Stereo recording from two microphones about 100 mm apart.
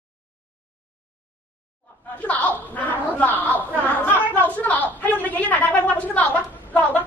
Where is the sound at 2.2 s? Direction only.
15° left (ahead or behind).